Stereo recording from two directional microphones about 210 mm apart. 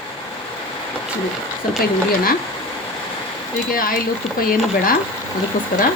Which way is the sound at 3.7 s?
45° left (ahead or behind).